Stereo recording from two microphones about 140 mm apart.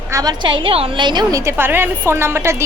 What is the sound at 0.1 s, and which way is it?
A woman's voice, 30° right (ahead or behind).